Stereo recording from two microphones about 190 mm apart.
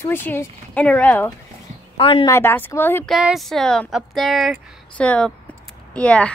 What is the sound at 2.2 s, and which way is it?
Speech, 10° left (ahead or behind).